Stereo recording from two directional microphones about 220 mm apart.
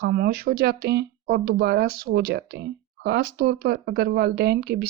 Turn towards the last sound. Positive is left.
turn(degrees=-50)  # may be behind; listen again after turning